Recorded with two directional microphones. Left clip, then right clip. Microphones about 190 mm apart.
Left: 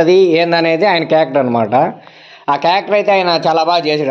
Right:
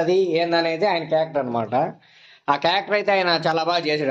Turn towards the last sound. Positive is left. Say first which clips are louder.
# left 9 dB
turn(degrees=25)  # may be behind; listen again after turning